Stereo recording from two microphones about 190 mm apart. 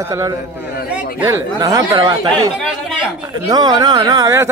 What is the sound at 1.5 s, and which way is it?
Speech, 20° right (ahead or behind).